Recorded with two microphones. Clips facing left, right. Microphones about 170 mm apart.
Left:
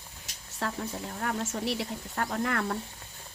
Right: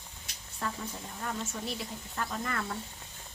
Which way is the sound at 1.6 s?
70° left (ahead or behind).